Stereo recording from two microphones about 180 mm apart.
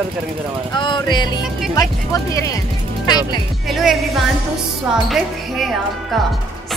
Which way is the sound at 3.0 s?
25° left (ahead or behind).